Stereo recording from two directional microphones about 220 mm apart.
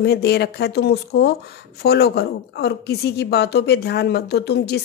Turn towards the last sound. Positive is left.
turn(degrees=50)  # may be behind; listen again after turning